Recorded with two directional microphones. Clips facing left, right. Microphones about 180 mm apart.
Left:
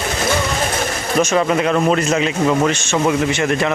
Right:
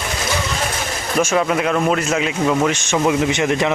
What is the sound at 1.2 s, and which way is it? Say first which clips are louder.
Speech: left 1 dB; 5° right (ahead or behind).